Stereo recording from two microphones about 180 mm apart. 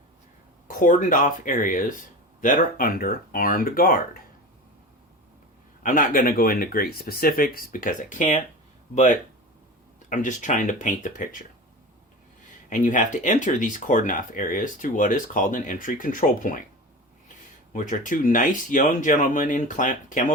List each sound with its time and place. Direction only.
0.7 s speech: 50° left (ahead or behind)
5.8 s speech: 50° left (ahead or behind)
10.1 s speech: 45° left (ahead or behind)
12.7 s speech: 45° left (ahead or behind)
17.7 s speech: 45° left (ahead or behind)